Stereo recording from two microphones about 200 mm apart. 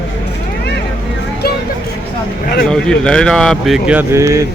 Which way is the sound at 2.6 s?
5° left (ahead or behind).